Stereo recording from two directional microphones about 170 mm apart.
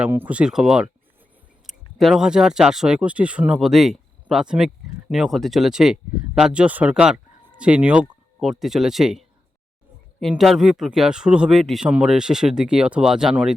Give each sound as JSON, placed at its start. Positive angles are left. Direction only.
{"t": 0.0, "sound": "speech", "side_deg": -10}